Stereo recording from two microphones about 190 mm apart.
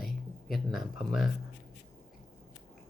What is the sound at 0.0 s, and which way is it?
Speech, centre (ahead or behind).